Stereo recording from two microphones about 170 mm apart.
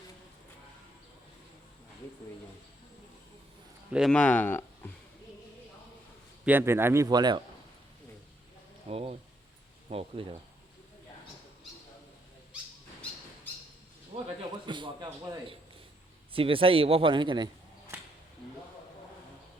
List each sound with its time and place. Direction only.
3.9 s speech: centre (ahead or behind)
6.4 s a man's voice: 10° right (ahead or behind)
8.9 s speech: 35° right (ahead or behind)
14.1 s a man's voice: 35° right (ahead or behind)